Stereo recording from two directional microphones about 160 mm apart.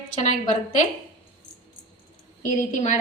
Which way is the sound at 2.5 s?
50° left (ahead or behind).